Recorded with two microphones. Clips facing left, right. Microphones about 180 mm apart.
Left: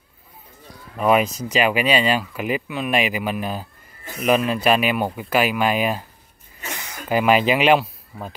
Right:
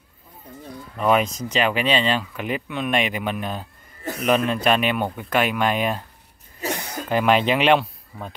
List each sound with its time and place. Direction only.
0.9 s speech: 5° left (ahead or behind)
7.1 s speech: 5° left (ahead or behind)